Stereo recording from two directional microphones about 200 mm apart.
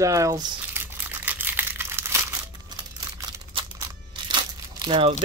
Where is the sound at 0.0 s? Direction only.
15° right (ahead or behind).